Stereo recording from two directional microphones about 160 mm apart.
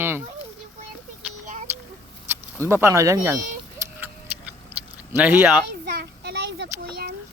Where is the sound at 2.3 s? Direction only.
15° right (ahead or behind).